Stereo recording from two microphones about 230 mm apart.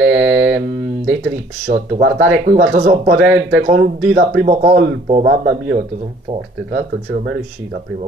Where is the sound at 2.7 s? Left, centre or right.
Right.